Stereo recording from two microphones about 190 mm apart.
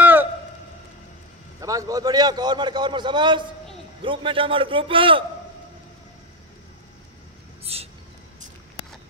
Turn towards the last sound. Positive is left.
turn(degrees=-30)  # may be behind; listen again after turning